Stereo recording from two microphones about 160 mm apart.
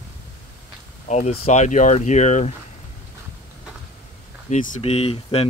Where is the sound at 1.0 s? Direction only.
45° left (ahead or behind).